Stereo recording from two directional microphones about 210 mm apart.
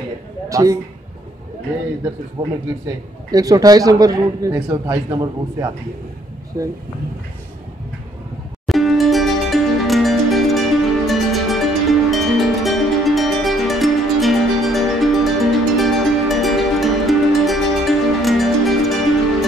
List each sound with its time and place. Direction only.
0.5 s a man's voice: 15° right (ahead or behind)
2.4 s a man's voice: 20° right (ahead or behind)
8.6 s music: centre (ahead or behind)